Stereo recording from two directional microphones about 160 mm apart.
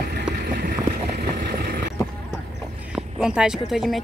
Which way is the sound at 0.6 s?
85° right.